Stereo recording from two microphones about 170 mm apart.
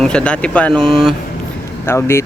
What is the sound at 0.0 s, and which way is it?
Speech, 5° left (ahead or behind).